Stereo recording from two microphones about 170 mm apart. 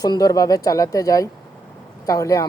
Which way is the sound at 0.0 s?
20° left (ahead or behind).